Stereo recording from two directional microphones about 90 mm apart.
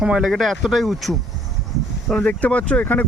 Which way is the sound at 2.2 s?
15° left (ahead or behind).